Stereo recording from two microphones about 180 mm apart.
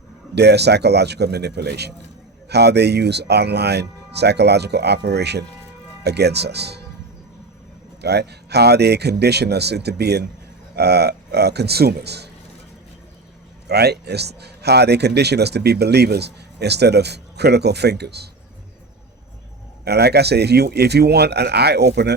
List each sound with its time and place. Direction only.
0.3 s speech: 70° right (ahead or behind)
8.0 s a man's voice: 65° right (ahead or behind)
13.7 s a man's voice: 65° right (ahead or behind)
19.8 s a man's voice: 65° right (ahead or behind)